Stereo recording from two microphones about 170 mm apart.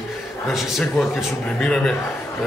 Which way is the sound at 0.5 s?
Centre (ahead or behind).